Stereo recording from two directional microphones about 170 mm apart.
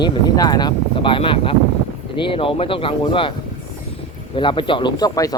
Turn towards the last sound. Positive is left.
turn(degrees=20)  # may be behind; listen again after turning